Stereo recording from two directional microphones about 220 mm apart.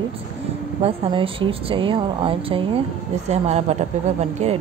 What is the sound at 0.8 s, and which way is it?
A woman's voice, 25° right (ahead or behind).